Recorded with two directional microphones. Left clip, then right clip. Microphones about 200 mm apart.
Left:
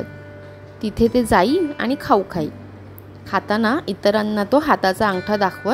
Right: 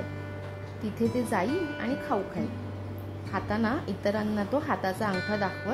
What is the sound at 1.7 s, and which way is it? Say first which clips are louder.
A woman's voice: left 12 dB; 35° left (ahead or behind).